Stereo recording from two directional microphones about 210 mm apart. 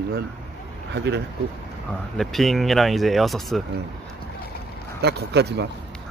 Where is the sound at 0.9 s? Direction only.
55° right (ahead or behind).